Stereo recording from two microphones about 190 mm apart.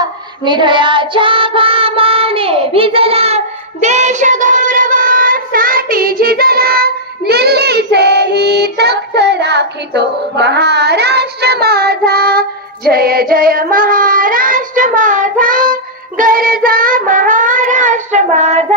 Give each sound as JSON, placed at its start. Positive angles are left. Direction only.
{"t": 0.0, "sound": "child singing", "side_deg": -25}